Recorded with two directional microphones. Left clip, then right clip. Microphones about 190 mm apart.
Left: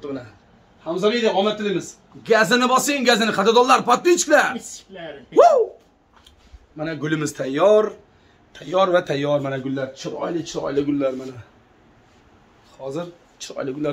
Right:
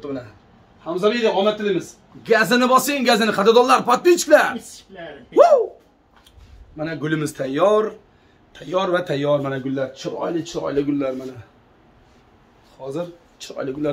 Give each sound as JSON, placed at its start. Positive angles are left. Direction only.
{"t": 0.9, "sound": "a man's voice", "side_deg": 0}
{"t": 6.8, "sound": "a man's voice", "side_deg": 10}
{"t": 12.8, "sound": "speech", "side_deg": 20}